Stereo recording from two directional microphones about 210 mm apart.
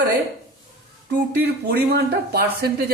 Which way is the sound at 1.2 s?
50° right (ahead or behind).